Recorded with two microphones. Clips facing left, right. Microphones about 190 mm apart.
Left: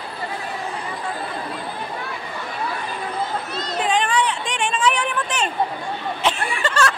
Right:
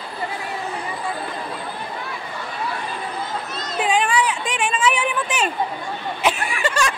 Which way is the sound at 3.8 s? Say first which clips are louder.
Right 1 dB; 10° right (ahead or behind).